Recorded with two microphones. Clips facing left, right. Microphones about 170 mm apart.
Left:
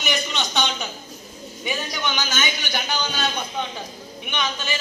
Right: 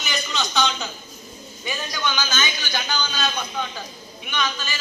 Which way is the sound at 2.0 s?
20° left (ahead or behind).